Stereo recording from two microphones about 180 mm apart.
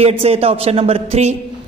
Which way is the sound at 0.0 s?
35° right (ahead or behind).